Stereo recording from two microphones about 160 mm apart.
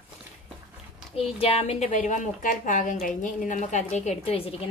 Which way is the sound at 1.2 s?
40° left (ahead or behind).